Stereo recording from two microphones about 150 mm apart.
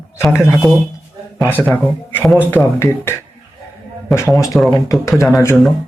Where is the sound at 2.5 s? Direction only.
15° left (ahead or behind).